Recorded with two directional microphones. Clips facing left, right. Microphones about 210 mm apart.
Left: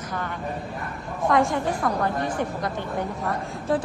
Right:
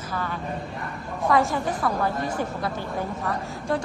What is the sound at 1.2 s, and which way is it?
A woman's voice, centre (ahead or behind).